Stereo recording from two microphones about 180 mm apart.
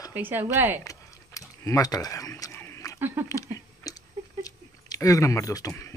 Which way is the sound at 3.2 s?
20° left (ahead or behind).